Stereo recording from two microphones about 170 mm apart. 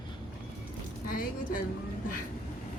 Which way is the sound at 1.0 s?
55° left (ahead or behind).